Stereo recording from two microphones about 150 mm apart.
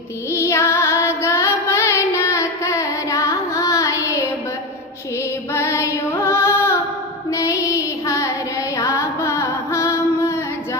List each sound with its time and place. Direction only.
0.3 s child singing: 20° left (ahead or behind)
5.5 s female singing: 20° left (ahead or behind)
7.3 s child singing: 20° left (ahead or behind)
8.7 s music: 20° left (ahead or behind)